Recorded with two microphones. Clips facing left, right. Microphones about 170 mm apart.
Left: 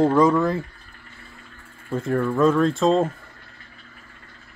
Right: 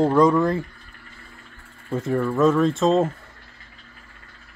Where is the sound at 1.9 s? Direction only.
5° right (ahead or behind).